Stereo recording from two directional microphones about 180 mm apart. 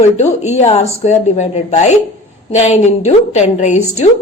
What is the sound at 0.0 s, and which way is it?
A woman's voice, 40° left (ahead or behind).